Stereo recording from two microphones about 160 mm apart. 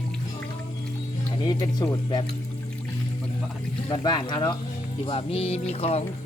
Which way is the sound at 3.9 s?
30° left (ahead or behind).